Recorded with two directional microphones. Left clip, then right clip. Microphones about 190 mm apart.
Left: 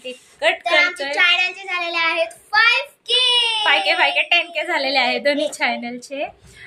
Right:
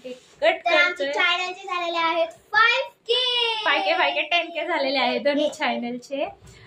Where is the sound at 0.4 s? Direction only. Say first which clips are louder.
Left 2 dB; 10° left (ahead or behind).